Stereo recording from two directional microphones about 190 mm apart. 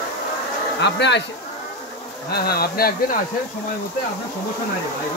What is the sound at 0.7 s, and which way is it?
Speech, 65° left (ahead or behind).